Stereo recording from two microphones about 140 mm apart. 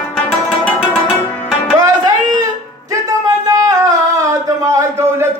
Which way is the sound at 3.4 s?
25° right (ahead or behind).